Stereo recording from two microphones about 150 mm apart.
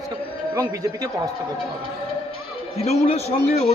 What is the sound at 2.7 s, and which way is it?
Speech, 45° left (ahead or behind).